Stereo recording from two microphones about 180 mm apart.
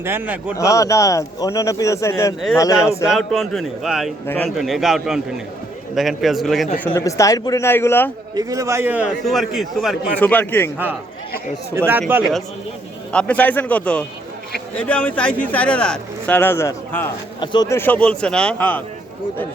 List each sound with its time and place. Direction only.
0.0 s speech: 10° right (ahead or behind)
0.5 s speech: 20° left (ahead or behind)
3.1 s a man's voice: centre (ahead or behind)
6.8 s speech: 15° left (ahead or behind)
8.4 s a man's voice: 20° right (ahead or behind); by 10.2 s centre (ahead or behind)
10.2 s speech: 10° left (ahead or behind)
11.9 s speech: 10° right (ahead or behind)
13.1 s speech: 5° left (ahead or behind)
17.4 s speech: 25° left (ahead or behind); by 18.8 s 5° left (ahead or behind)